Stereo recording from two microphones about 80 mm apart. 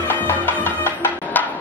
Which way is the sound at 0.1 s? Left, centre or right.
Left.